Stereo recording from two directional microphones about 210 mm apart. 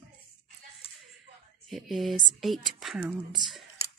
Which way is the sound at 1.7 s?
Centre (ahead or behind).